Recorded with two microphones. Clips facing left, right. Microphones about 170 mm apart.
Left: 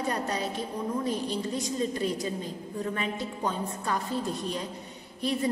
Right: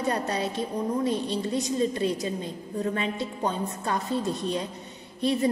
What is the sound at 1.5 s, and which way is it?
A woman's voice, 20° right (ahead or behind).